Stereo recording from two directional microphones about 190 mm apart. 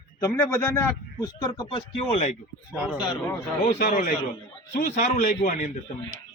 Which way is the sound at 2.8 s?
5° right (ahead or behind).